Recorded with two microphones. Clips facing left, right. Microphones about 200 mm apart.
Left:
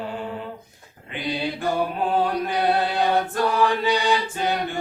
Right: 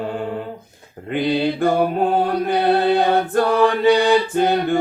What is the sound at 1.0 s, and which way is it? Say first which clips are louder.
Mantra: right 9 dB; 55° right (ahead or behind).